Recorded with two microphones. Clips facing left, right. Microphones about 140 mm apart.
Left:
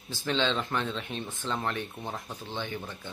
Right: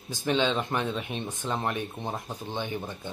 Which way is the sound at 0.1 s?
15° right (ahead or behind).